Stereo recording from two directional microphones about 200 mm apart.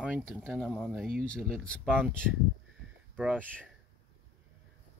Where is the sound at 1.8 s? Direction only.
5° right (ahead or behind).